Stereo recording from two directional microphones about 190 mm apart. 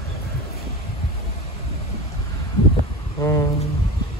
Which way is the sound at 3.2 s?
20° left (ahead or behind).